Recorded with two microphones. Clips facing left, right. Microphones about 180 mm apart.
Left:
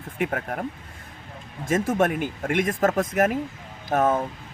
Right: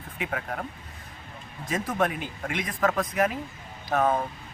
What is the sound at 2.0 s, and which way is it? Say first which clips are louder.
Speech: left 4 dB; 50° left (ahead or behind).